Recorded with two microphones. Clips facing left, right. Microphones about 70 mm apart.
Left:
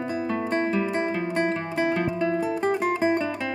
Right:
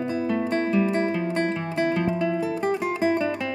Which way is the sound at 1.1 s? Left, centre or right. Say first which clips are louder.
Even; centre.